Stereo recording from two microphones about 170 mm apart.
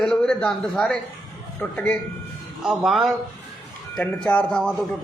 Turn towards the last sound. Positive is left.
turn(degrees=5)  # may be behind; listen again after turning